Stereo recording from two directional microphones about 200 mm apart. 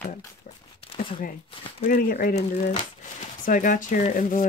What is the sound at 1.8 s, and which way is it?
Speech, 45° left (ahead or behind).